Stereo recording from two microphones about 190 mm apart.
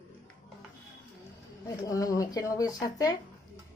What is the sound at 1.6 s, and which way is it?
Speech, 15° left (ahead or behind).